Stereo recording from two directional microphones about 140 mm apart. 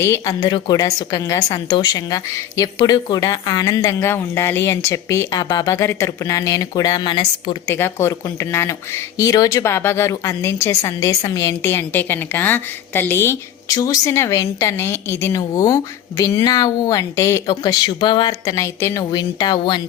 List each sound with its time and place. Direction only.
0.0 s speech: 25° left (ahead or behind)
7.7 s speech: 15° left (ahead or behind)